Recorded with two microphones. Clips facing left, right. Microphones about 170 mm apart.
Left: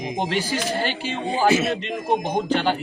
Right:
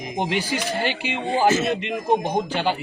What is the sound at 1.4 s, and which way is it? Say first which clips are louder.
Speech: left 1 dB; 10° left (ahead or behind).